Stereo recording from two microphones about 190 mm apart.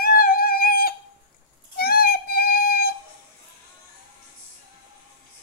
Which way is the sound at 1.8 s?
50° left (ahead or behind).